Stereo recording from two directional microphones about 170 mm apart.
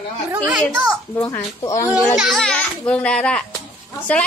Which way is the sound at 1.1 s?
10° left (ahead or behind).